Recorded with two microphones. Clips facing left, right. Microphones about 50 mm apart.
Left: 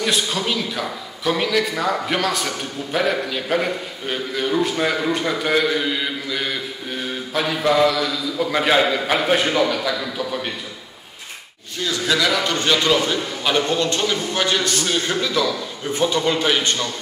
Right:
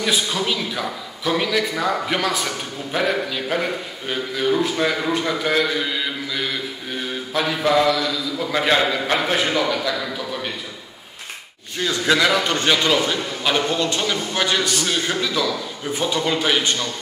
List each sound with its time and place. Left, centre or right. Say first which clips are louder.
0.0 s a man's voice: even; centre
11.8 s a man's voice: right 2 dB; right
12.6 s a man's voice: left 2 dB; centre